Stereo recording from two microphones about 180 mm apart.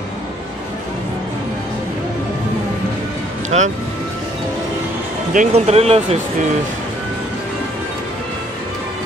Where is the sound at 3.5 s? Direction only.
40° right (ahead or behind).